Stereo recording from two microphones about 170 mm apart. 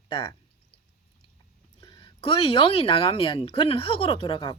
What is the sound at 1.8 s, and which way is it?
Speech, 30° left (ahead or behind).